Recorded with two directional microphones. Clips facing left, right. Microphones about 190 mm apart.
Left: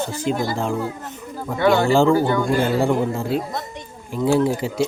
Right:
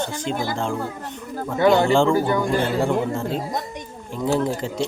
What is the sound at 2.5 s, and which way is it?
Speech, 10° left (ahead or behind).